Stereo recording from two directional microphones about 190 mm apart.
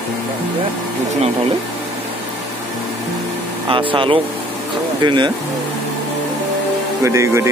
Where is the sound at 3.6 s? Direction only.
25° right (ahead or behind).